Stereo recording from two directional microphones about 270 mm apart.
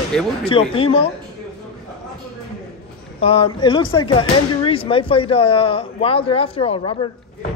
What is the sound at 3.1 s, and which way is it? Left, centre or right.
Speech, left.